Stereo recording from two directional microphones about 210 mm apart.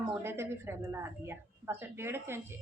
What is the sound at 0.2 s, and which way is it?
Speech, 10° right (ahead or behind).